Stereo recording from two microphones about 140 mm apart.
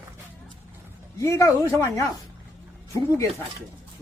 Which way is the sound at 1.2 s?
20° left (ahead or behind).